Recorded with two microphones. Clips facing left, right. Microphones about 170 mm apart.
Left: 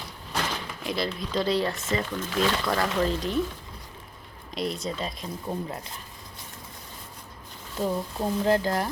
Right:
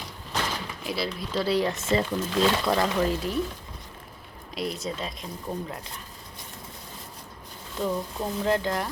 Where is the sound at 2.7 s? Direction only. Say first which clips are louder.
Right 1 dB; 10° right (ahead or behind).